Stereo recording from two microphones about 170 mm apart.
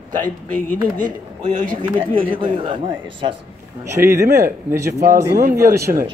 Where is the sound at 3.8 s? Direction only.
15° right (ahead or behind).